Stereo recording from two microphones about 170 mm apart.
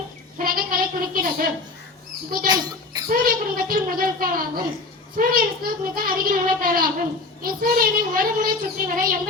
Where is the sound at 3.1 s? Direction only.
60° right (ahead or behind).